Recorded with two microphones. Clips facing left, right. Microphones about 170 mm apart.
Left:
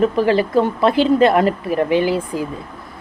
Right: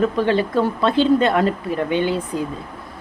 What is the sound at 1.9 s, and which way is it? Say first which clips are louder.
Speech: left 3 dB; 90° left.